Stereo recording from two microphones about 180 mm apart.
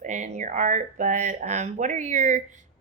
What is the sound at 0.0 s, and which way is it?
Speech, 45° right (ahead or behind).